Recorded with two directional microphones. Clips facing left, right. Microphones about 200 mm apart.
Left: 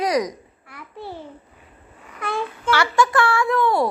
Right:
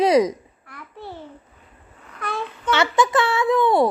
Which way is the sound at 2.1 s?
10° left (ahead or behind).